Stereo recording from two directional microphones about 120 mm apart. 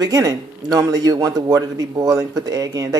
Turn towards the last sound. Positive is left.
turn(degrees=-30)  # may be behind; listen again after turning